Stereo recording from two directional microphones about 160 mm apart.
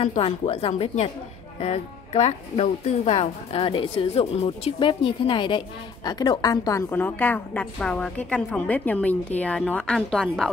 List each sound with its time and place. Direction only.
0.0 s a woman's voice: 40° left (ahead or behind); by 10.5 s centre (ahead or behind)